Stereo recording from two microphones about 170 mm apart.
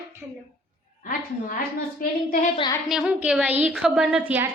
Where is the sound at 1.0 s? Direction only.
55° left (ahead or behind).